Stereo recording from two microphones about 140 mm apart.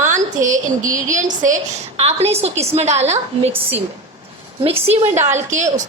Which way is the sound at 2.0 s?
50° right (ahead or behind).